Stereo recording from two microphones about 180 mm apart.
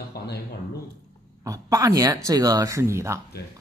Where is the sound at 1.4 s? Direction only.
20° right (ahead or behind).